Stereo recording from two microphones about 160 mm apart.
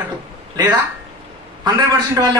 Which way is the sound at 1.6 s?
25° right (ahead or behind).